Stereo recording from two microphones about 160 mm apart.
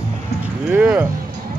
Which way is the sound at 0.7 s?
10° right (ahead or behind).